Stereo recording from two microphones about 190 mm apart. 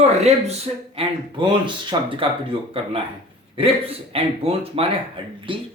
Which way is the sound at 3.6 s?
30° right (ahead or behind).